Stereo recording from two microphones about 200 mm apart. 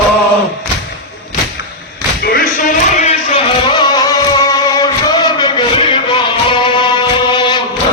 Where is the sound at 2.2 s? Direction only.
50° left (ahead or behind).